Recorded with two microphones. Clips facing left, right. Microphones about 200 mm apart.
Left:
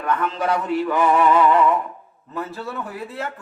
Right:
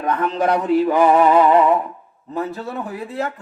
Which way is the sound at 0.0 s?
35° right (ahead or behind).